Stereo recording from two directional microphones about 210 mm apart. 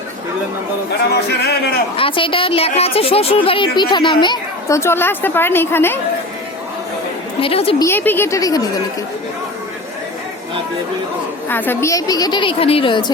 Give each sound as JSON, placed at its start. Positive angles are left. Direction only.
{"t": 1.1, "sound": "speech", "side_deg": 50}
{"t": 2.0, "sound": "a woman's voice", "side_deg": 25}
{"t": 7.4, "sound": "a woman's voice", "side_deg": 25}
{"t": 7.9, "sound": "a woman's voice", "side_deg": 10}
{"t": 11.4, "sound": "a woman's voice", "side_deg": 10}